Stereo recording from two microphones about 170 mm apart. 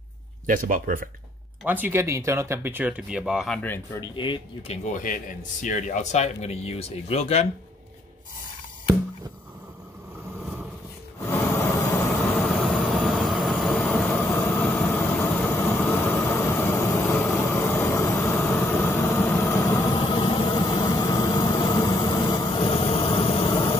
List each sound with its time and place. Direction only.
0.5 s speech: 55° right (ahead or behind)
1.7 s speech: 10° right (ahead or behind); by 3.8 s 10° left (ahead or behind)
4.1 s speech: 30° left (ahead or behind)
5.0 s a man's voice: 50° left (ahead or behind)
11.3 s a sound: 15° left (ahead or behind)
12.4 s train: centre (ahead or behind); by 23.8 s 35° left (ahead or behind)